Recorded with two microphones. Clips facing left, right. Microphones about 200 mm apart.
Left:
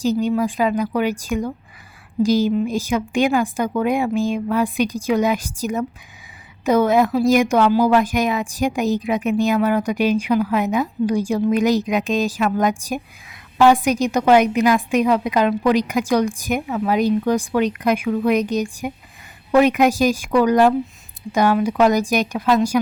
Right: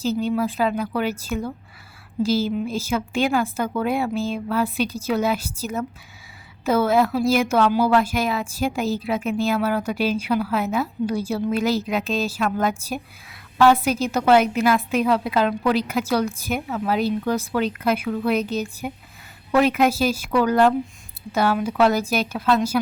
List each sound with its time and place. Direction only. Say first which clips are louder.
0.0 s speech: left 3 dB; 15° left (ahead or behind)